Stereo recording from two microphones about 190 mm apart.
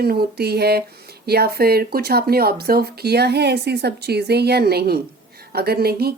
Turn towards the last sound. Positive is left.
turn(degrees=-55)  # may be behind; listen again after turning